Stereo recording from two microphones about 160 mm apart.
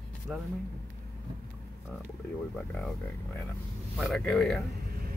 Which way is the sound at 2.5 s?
5° left (ahead or behind).